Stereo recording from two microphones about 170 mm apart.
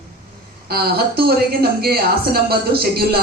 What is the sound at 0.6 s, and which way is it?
Speech, 65° right (ahead or behind).